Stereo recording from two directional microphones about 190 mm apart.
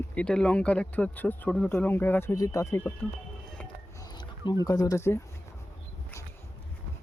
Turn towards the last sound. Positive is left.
turn(degrees=15)  # may be behind; listen again after turning